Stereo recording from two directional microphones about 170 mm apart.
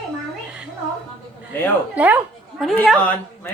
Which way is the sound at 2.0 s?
10° right (ahead or behind).